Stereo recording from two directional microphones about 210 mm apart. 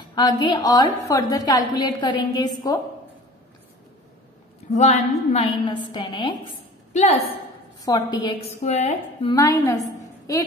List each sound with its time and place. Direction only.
0.0 s a woman's voice: 20° left (ahead or behind)
4.7 s a woman's voice: 30° left (ahead or behind)
5.9 s a woman's voice: 20° left (ahead or behind)
7.8 s a woman's voice: 20° left (ahead or behind)
9.3 s a woman's voice: 15° left (ahead or behind)